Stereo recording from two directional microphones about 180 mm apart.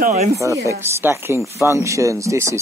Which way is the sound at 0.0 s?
40° right (ahead or behind).